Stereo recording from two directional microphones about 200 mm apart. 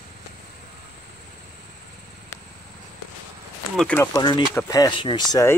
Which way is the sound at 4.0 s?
20° left (ahead or behind).